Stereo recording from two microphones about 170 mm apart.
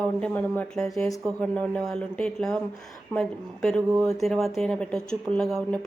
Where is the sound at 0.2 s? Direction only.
10° left (ahead or behind).